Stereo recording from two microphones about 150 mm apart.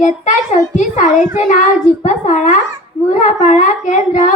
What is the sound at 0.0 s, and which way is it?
A child's voice, 55° left (ahead or behind).